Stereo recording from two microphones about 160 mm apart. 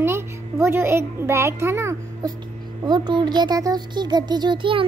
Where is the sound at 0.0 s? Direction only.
15° right (ahead or behind).